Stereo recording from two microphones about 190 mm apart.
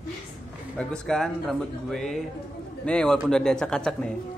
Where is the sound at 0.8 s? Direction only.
5° left (ahead or behind).